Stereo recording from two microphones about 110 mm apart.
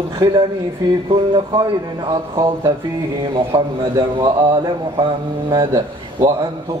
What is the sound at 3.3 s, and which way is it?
Speech, 45° right (ahead or behind).